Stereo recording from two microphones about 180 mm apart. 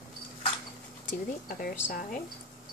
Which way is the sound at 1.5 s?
50° left (ahead or behind).